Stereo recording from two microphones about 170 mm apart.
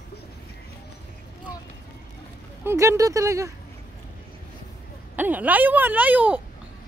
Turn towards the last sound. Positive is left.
turn(degrees=-10)  # may be behind; listen again after turning